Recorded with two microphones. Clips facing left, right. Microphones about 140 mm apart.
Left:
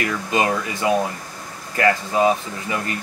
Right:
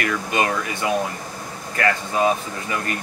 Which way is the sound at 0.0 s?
25° left (ahead or behind).